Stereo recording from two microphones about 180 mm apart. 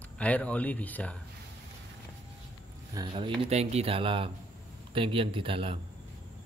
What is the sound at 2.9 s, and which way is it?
Speech, 25° right (ahead or behind).